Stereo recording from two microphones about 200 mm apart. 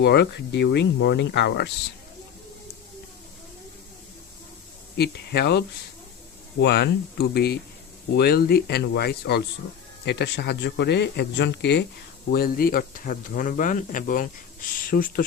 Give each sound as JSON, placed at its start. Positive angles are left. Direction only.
{"t": 0.0, "sound": "speech", "side_deg": 55}
{"t": 4.9, "sound": "speech", "side_deg": 55}
{"t": 12.3, "sound": "speech", "side_deg": 50}